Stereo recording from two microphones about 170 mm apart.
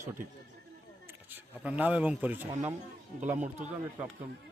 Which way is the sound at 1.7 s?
10° right (ahead or behind).